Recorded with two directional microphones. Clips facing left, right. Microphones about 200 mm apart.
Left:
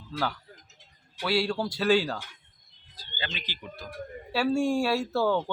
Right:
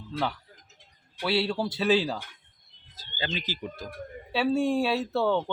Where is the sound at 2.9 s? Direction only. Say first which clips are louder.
Right 3 dB; 45° right (ahead or behind).